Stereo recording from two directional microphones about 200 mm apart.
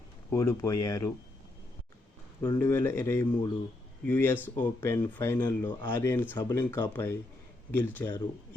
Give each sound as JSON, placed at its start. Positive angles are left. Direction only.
{"t": 0.3, "sound": "speech", "side_deg": 15}
{"t": 2.4, "sound": "speech", "side_deg": 15}